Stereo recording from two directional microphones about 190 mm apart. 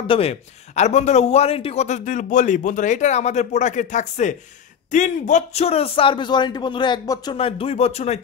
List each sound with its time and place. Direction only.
0.0 s a man's voice: 30° left (ahead or behind)
7.3 s a man's voice: 30° left (ahead or behind)